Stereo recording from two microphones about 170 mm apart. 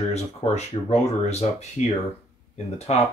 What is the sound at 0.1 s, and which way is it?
Speech, 40° left (ahead or behind).